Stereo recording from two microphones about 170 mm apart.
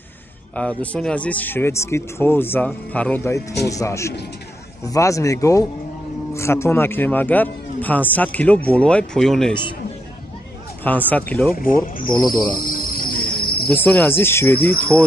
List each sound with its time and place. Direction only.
0.6 s speech: 5° left (ahead or behind)
11.1 s speech: 10° left (ahead or behind)
11.5 s speech: 55° left (ahead or behind)
12.5 s cricket: 55° left (ahead or behind)
13.7 s speech: 10° left (ahead or behind)